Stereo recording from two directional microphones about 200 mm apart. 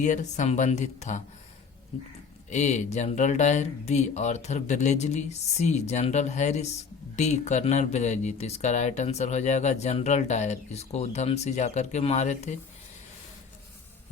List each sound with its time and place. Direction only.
0.0 s speech: 35° left (ahead or behind)
2.5 s speech: 35° left (ahead or behind)